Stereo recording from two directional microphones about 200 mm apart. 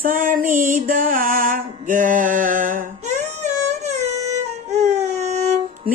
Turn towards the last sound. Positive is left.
turn(degrees=-35)  # may be behind; listen again after turning